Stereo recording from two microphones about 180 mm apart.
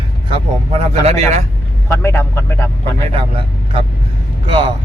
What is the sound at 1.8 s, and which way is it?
A man's voice, 15° left (ahead or behind).